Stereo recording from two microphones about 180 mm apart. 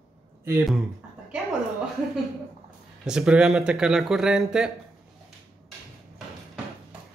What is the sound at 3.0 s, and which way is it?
Speech, 5° right (ahead or behind).